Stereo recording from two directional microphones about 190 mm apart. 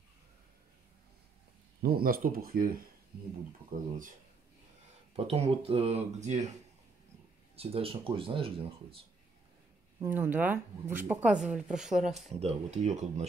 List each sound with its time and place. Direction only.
1.8 s speech: 50° right (ahead or behind)
5.1 s speech: 30° right (ahead or behind)
7.5 s speech: 30° right (ahead or behind)
10.0 s speech: 10° right (ahead or behind)
12.3 s speech: 35° right (ahead or behind)